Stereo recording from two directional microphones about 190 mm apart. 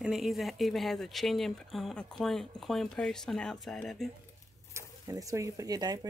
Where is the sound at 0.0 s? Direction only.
Centre (ahead or behind).